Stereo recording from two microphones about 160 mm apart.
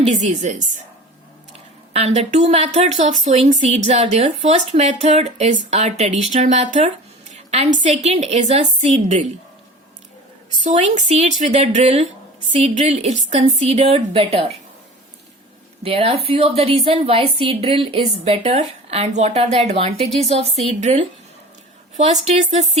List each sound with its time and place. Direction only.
0.0 s speech: 45° right (ahead or behind)
1.9 s speech: 40° right (ahead or behind)
10.6 s a woman's voice: 50° right (ahead or behind)
15.8 s a woman's voice: 35° right (ahead or behind)
21.9 s speech: 45° right (ahead or behind)